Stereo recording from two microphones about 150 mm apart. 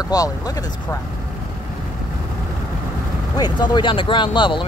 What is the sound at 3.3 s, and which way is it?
Speech, 25° left (ahead or behind).